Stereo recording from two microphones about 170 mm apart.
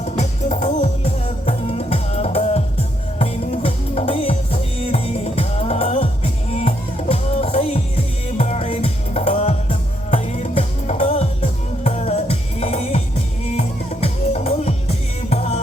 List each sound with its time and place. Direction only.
0.0 s music: 40° left (ahead or behind)